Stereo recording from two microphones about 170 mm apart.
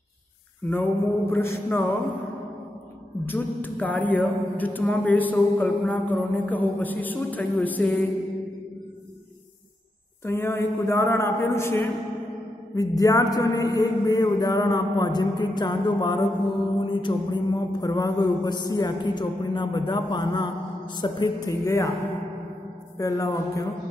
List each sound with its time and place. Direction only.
0.7 s speech: 10° left (ahead or behind)
3.3 s speech: 10° left (ahead or behind)
10.2 s a man's voice: 15° left (ahead or behind)
22.9 s a man's voice: 20° left (ahead or behind)